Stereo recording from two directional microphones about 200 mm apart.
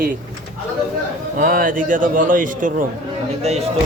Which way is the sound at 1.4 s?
45° right (ahead or behind).